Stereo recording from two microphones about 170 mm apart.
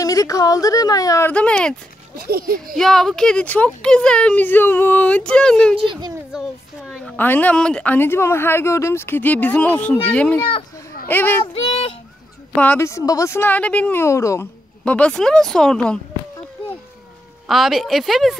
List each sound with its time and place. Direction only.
0.0 s speech: 20° left (ahead or behind)
1.3 s speech: 5° left (ahead or behind)
2.1 s speech: 65° right (ahead or behind)
2.7 s speech: centre (ahead or behind)
5.8 s a child's voice: 25° right (ahead or behind)
6.3 s a sound: centre (ahead or behind)
7.2 s speech: 10° left (ahead or behind)
11.4 s child singing: 35° left (ahead or behind)
12.5 s speech: 10° left (ahead or behind)
14.9 s speech: 5° left (ahead or behind)
17.5 s speech: centre (ahead or behind)